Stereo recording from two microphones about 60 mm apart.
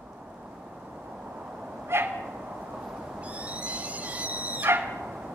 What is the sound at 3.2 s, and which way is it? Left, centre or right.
Owl, right.